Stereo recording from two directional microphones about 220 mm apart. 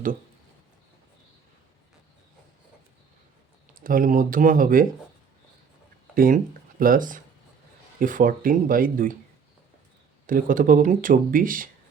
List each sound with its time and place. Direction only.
3.8 s speech: 40° right (ahead or behind)
6.1 s speech: 40° right (ahead or behind)
10.2 s speech: 40° right (ahead or behind)